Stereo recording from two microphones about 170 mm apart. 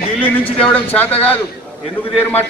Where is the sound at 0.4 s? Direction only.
10° left (ahead or behind).